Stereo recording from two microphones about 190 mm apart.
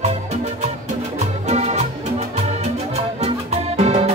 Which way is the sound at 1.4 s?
35° right (ahead or behind).